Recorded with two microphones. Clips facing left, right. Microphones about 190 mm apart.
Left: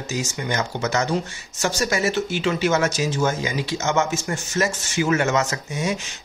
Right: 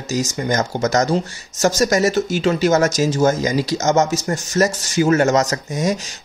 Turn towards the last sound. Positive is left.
turn(degrees=-40)  # may be behind; listen again after turning